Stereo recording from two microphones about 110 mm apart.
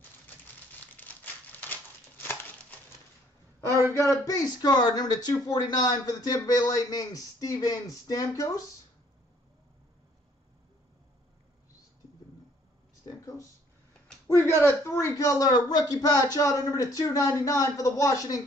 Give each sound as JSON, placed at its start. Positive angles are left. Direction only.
{"t": 0.9, "sound": "crumpling", "side_deg": 15}
{"t": 3.6, "sound": "speech", "side_deg": 25}
{"t": 14.2, "sound": "a sound", "side_deg": 25}
{"t": 14.6, "sound": "speech", "side_deg": 25}